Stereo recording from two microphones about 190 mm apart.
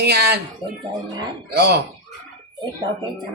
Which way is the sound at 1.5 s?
60° right (ahead or behind).